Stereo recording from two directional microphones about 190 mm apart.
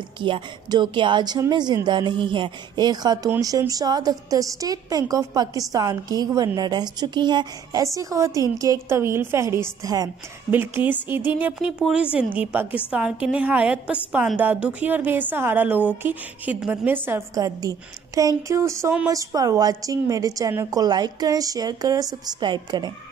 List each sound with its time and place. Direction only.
0.2 s a woman's voice: 25° right (ahead or behind)